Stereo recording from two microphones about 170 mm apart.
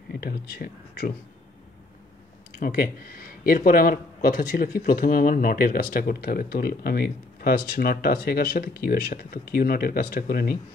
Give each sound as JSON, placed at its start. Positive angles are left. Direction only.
{"t": 0.1, "sound": "speech", "side_deg": 65}
{"t": 2.6, "sound": "speech", "side_deg": 60}